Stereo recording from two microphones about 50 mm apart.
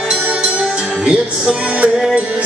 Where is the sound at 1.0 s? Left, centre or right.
Centre.